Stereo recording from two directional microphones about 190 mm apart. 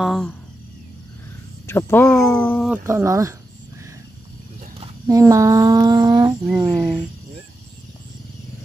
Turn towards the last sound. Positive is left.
turn(degrees=-5)  # may be behind; listen again after turning